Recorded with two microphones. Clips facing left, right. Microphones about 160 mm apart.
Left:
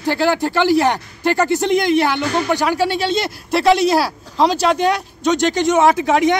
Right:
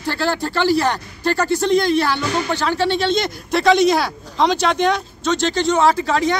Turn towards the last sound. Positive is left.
turn(degrees=20)  # may be behind; listen again after turning